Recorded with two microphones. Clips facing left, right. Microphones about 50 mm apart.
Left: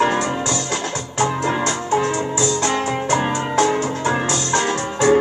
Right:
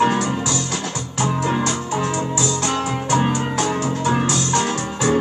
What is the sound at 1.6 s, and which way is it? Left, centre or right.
Music, left.